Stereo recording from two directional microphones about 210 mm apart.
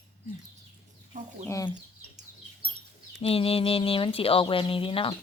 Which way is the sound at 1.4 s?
15° left (ahead or behind).